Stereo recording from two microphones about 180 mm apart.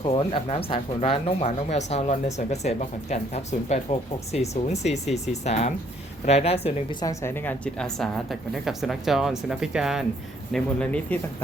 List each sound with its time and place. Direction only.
0.0 s speech: 30° left (ahead or behind)
7.0 s a woman's voice: 15° left (ahead or behind)